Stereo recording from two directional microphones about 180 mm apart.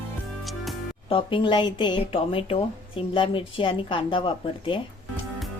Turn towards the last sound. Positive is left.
turn(degrees=30)  # may be behind; listen again after turning